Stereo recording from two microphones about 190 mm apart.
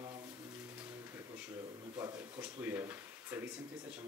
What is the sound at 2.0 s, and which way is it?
Speech, 15° right (ahead or behind).